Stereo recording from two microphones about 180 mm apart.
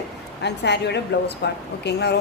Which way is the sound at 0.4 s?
70° left (ahead or behind).